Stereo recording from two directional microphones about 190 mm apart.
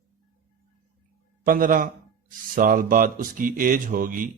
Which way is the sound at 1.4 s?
45° right (ahead or behind).